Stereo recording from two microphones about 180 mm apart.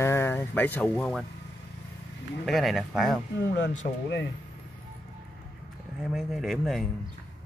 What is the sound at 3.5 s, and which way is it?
Speech, 80° left.